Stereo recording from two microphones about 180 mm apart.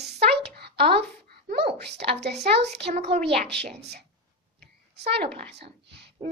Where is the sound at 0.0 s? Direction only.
65° right (ahead or behind).